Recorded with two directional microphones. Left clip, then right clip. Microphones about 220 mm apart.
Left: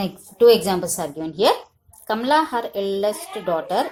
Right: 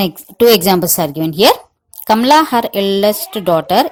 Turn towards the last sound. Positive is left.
turn(degrees=-45)  # may be behind; listen again after turning